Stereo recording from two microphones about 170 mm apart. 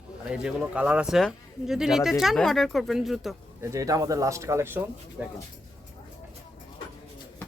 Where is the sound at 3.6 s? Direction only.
20° right (ahead or behind).